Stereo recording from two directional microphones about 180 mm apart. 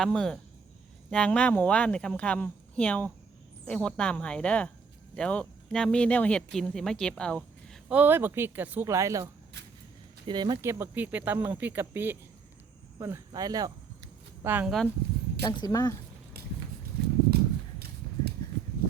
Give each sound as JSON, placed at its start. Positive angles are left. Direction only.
{"t": 0.0, "sound": "speech", "side_deg": 5}
{"t": 7.9, "sound": "speech", "side_deg": -10}
{"t": 14.4, "sound": "speech", "side_deg": -10}
{"t": 15.4, "sound": "speech", "side_deg": 20}
{"t": 17.3, "sound": "horse", "side_deg": -60}